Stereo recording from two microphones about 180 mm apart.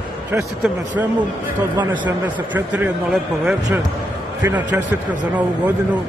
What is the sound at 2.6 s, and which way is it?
A man's voice, 10° right (ahead or behind).